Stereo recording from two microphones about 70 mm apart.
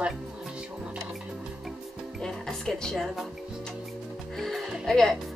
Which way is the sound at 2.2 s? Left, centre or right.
Centre.